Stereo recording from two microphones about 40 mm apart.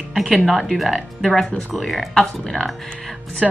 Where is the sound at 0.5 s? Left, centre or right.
Centre.